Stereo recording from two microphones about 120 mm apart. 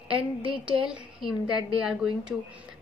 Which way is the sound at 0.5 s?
10° right (ahead or behind).